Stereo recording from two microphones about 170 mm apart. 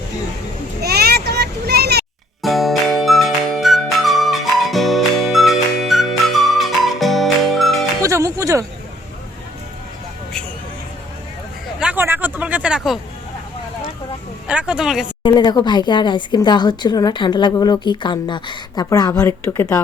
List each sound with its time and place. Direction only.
0.8 s vehicle: 70° right (ahead or behind)
2.4 s music: centre (ahead or behind)
8.0 s music: 20° right (ahead or behind)
11.8 s a sound: 10° right (ahead or behind)
14.4 s speech: 5° right (ahead or behind)
15.2 s speech: 25° left (ahead or behind)